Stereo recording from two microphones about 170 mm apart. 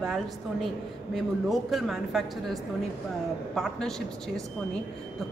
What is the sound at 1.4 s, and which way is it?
Speech, centre (ahead or behind).